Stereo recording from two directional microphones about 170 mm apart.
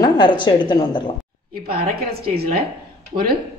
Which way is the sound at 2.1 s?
65° right (ahead or behind).